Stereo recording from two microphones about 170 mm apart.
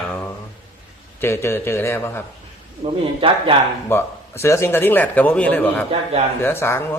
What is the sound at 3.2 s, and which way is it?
Speech, 30° right (ahead or behind).